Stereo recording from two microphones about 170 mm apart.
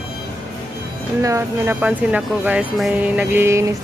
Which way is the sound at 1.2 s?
15° right (ahead or behind).